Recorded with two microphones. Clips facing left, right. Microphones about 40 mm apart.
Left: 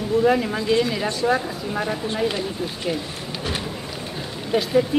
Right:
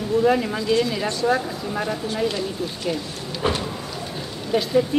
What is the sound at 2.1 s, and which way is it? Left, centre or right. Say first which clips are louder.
Speech: even; left.